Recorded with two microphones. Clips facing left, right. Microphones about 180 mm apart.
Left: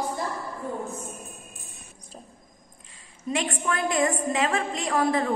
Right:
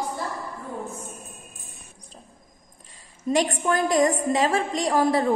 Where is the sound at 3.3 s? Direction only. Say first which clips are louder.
Right 5 dB; 40° right (ahead or behind).